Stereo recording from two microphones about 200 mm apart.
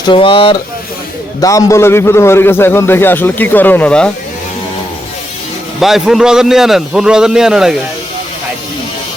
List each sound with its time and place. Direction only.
0.0 s a man's voice: 25° left (ahead or behind); by 4.1 s 5° left (ahead or behind)
5.8 s a man's voice: centre (ahead or behind)